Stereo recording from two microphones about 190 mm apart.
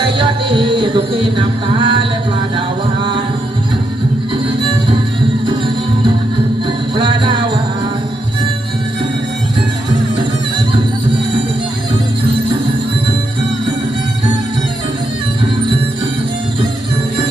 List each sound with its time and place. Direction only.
0.2 s music: 25° right (ahead or behind)
6.7 s music: 25° right (ahead or behind)